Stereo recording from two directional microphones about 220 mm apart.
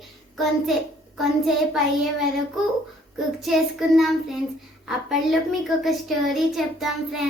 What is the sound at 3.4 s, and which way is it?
A child's voice, centre (ahead or behind).